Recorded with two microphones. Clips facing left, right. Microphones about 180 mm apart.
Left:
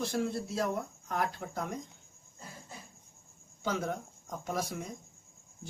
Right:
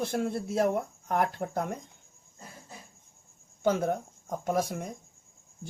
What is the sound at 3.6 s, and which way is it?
Speech, 55° right (ahead or behind).